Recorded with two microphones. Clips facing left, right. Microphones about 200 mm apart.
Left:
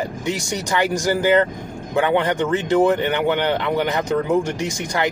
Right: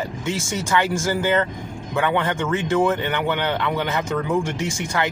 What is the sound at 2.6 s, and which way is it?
Speech, 35° left (ahead or behind).